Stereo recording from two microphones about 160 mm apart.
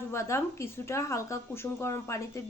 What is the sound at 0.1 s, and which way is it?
Speech, 15° left (ahead or behind).